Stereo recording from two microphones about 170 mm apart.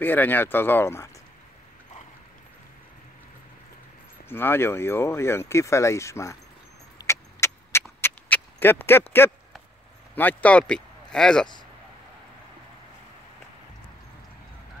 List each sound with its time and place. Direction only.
0.0 s speech: 10° left (ahead or behind)
4.3 s speech: 15° left (ahead or behind)
7.1 s vehicle: 15° left (ahead or behind)
8.0 s a sound: 10° left (ahead or behind)
10.1 s speech: 10° left (ahead or behind)